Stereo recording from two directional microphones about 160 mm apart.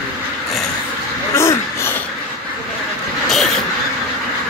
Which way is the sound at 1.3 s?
15° left (ahead or behind).